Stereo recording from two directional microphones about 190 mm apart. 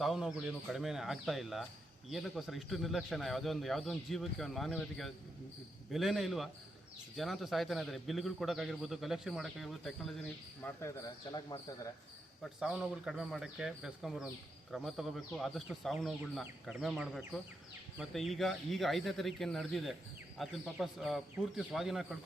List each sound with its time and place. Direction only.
0.0 s a man's voice: centre (ahead or behind)
10.6 s speech: 15° left (ahead or behind)
12.4 s a man's voice: 5° right (ahead or behind)